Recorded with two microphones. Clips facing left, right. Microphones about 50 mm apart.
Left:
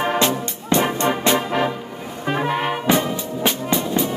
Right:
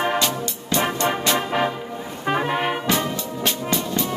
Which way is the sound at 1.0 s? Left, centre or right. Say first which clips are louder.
Left 3 dB; centre.